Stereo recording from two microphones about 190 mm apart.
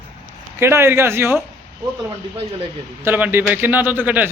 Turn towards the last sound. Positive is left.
turn(degrees=-10)  # may be behind; listen again after turning